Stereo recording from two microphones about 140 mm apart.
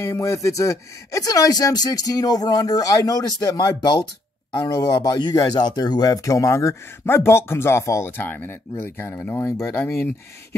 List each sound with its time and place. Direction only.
0.0 s speech: 20° left (ahead or behind)